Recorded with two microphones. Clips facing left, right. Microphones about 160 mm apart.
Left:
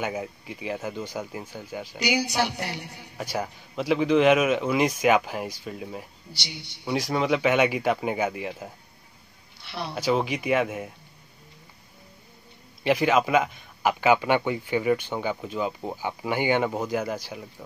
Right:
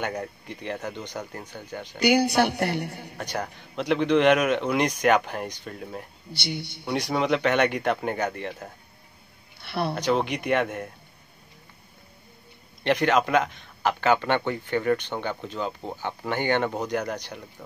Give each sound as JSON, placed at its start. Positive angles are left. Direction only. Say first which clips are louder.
{"t": 0.0, "sound": "a man's voice", "louder": "even", "side_deg": 5}
{"t": 2.0, "sound": "a woman's voice", "louder": "right 5 dB", "side_deg": -55}
{"t": 3.2, "sound": "a man's voice", "louder": "left 2 dB", "side_deg": 5}
{"t": 6.3, "sound": "a woman's voice", "louder": "right 9 dB", "side_deg": -55}
{"t": 6.8, "sound": "a man's voice", "louder": "left 1 dB", "side_deg": 0}
{"t": 9.6, "sound": "a sound", "louder": "right 6 dB", "side_deg": -55}
{"t": 9.9, "sound": "a man's voice", "louder": "left 3 dB", "side_deg": 5}
{"t": 12.8, "sound": "a man's voice", "louder": "even", "side_deg": 5}